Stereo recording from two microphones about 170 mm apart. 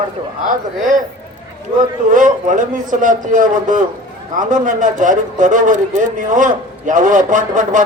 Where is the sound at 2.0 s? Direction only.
50° right (ahead or behind).